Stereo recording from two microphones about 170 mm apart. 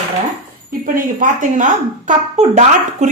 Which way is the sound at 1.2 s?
50° right (ahead or behind).